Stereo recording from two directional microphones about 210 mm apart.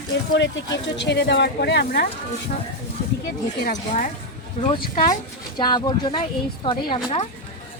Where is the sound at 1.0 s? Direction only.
55° left (ahead or behind).